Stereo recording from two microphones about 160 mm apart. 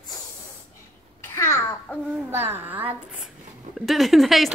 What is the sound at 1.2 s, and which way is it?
Speech, 15° left (ahead or behind).